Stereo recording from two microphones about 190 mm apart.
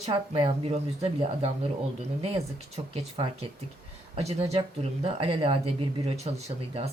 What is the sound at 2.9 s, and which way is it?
Speech, 30° right (ahead or behind).